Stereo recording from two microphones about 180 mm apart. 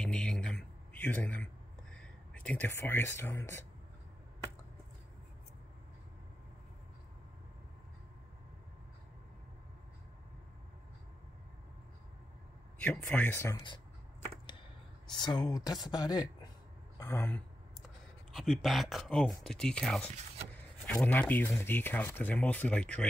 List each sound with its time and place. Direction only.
0.0 s a sound: 5° left (ahead or behind)
12.7 s speech: 10° left (ahead or behind)
15.1 s speech: 25° left (ahead or behind)
18.3 s speech: centre (ahead or behind)